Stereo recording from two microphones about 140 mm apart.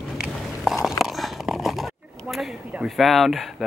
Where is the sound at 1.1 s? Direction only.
Centre (ahead or behind).